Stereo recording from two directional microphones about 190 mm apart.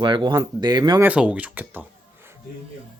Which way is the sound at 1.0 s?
5° right (ahead or behind).